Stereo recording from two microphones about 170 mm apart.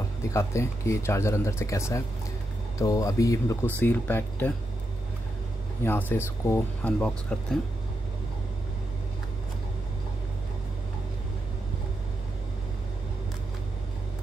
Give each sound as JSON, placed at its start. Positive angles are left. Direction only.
{"t": 0.2, "sound": "speech", "side_deg": 15}
{"t": 5.9, "sound": "speech", "side_deg": 10}
{"t": 7.0, "sound": "speech", "side_deg": 5}